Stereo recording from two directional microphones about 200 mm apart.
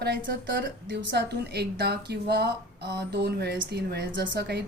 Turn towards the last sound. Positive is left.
turn(degrees=-55)  # may be behind; listen again after turning